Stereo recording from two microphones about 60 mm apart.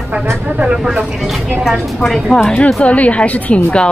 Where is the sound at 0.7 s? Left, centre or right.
Centre.